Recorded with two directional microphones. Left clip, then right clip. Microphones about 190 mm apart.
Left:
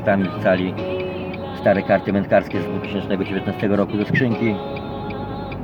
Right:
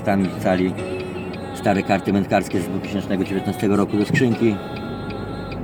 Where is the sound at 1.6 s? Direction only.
15° right (ahead or behind).